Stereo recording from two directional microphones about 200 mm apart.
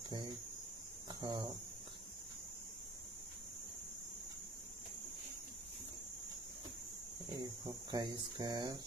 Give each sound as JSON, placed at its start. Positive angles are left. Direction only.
{"t": 1.2, "sound": "cricket", "side_deg": -25}
{"t": 7.3, "sound": "speech", "side_deg": -20}